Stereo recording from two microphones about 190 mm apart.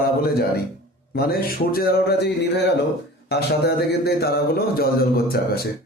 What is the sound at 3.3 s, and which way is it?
Speech, 60° left (ahead or behind).